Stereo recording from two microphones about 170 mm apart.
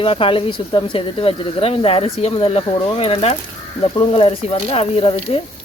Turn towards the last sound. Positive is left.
turn(degrees=35)  # may be behind; listen again after turning